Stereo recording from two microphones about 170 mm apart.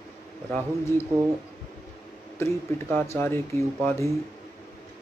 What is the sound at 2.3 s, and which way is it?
Speech, 15° left (ahead or behind).